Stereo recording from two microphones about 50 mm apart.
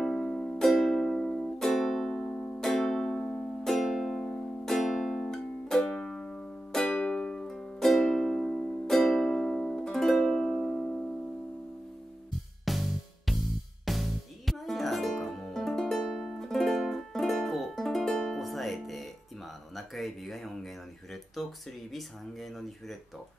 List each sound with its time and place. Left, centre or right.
0.0 s music: centre
0.6 s music: centre
3.7 s music: centre
5.8 s music: left
7.0 s music: centre
7.4 s music: centre
12.6 s music: centre
19.7 s a sound: centre
21.9 s speech: centre